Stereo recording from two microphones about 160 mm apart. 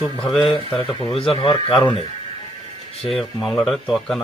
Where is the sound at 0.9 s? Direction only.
35° left (ahead or behind).